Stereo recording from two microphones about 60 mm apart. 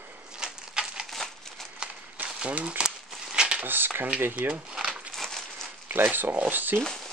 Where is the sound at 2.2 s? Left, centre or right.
Centre.